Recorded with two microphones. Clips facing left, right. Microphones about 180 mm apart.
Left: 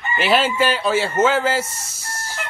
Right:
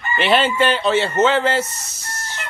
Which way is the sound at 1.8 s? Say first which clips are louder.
Left 1 dB; 30° left (ahead or behind).